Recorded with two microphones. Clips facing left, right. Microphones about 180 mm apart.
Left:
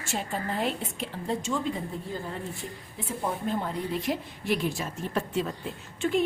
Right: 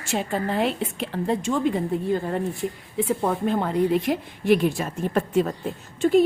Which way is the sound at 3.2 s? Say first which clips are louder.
Right 2 dB; 75° right (ahead or behind).